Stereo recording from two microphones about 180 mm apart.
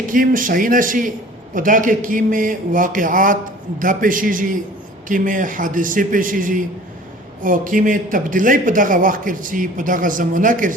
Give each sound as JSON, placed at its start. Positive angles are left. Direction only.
{"t": 0.1, "sound": "speech", "side_deg": -50}